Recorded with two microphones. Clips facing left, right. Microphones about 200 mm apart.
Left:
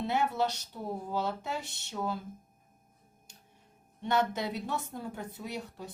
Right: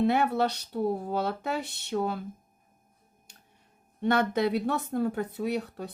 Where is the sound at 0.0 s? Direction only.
60° right (ahead or behind).